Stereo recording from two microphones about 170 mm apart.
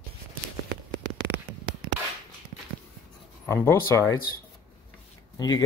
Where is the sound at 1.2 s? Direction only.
85° right.